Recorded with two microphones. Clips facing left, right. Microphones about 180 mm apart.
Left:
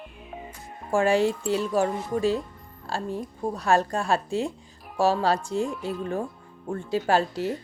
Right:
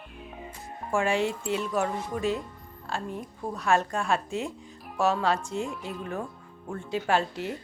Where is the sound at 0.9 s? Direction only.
35° left (ahead or behind).